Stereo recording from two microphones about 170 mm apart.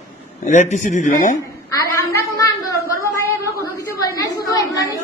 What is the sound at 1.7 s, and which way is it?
Speech, 20° left (ahead or behind).